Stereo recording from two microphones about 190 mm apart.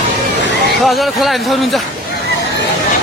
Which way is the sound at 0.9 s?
Centre (ahead or behind).